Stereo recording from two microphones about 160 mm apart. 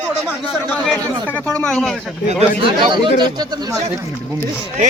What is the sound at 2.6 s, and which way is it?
Speech, 30° right (ahead or behind).